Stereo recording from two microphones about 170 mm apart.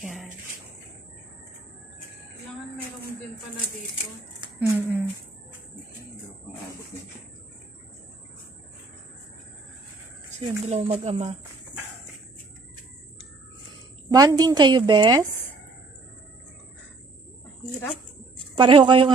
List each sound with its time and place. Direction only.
0.0 s a sound: centre (ahead or behind)
4.6 s speech: 10° right (ahead or behind)
10.4 s speech: 35° right (ahead or behind)
14.0 s a woman's voice: 20° right (ahead or behind)
18.6 s a woman's voice: 30° right (ahead or behind)